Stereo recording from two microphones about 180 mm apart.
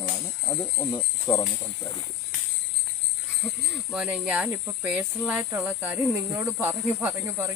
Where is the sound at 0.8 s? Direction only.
20° left (ahead or behind).